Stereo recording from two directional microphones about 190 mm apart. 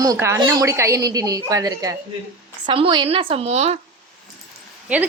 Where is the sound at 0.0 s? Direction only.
15° right (ahead or behind); by 3.8 s 35° right (ahead or behind).